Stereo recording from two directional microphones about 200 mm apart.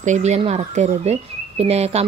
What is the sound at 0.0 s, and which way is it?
A woman's voice, 35° right (ahead or behind).